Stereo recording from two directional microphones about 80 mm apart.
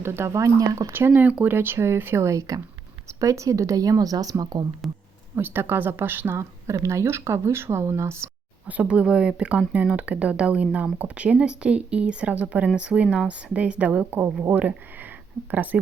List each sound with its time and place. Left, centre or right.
0.0 s speech: right
0.9 s speech: right
4.8 s speech: centre
5.4 s speech: right
8.6 s speech: centre